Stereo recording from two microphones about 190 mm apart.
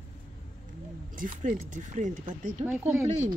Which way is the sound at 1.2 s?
40° right (ahead or behind).